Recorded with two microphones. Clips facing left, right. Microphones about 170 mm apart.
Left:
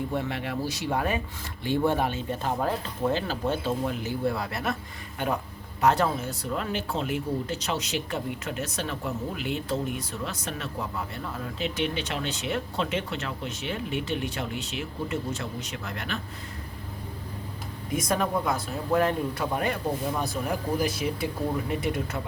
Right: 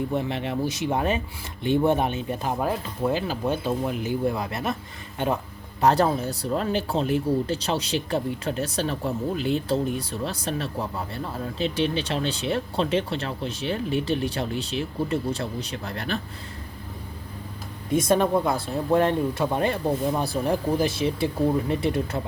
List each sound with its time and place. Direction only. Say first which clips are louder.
0.1 s speech: right 3 dB; 20° right (ahead or behind)
5.8 s speech: right 3 dB; 35° right (ahead or behind)
17.9 s speech: right 6 dB; 30° right (ahead or behind)